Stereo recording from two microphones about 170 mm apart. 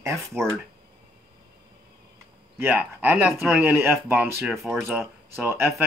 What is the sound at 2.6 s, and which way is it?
Speech, 10° right (ahead or behind).